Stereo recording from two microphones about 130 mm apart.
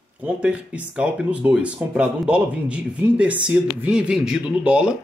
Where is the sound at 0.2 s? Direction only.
10° right (ahead or behind).